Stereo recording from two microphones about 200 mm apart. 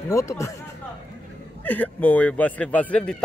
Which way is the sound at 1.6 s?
10° left (ahead or behind).